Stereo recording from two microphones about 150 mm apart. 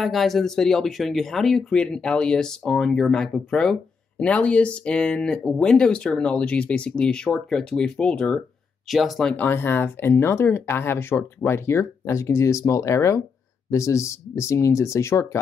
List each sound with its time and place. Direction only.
0.0 s speech: centre (ahead or behind); by 15.2 s 20° left (ahead or behind)